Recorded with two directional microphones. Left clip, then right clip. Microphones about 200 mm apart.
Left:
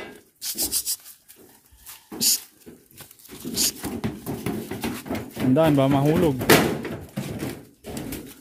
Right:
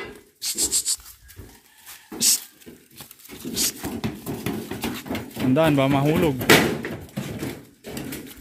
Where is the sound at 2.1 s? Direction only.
20° left (ahead or behind).